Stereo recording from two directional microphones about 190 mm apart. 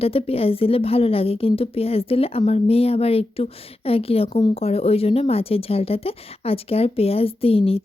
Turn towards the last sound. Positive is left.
turn(degrees=30)  # may be behind; listen again after turning